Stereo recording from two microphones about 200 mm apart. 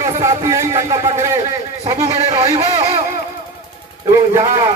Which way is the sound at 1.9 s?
15° right (ahead or behind).